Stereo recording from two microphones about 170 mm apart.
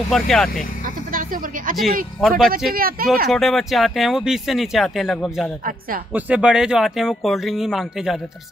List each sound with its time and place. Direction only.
0.1 s speech: centre (ahead or behind)
1.1 s speech: 55° right (ahead or behind)
2.1 s speech: centre (ahead or behind)
2.7 s speech: 60° right (ahead or behind)
3.3 s speech: centre (ahead or behind)